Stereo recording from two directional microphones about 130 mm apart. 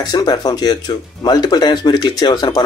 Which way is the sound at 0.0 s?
30° left (ahead or behind).